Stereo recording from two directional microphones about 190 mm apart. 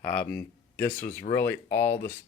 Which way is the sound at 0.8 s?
50° left (ahead or behind).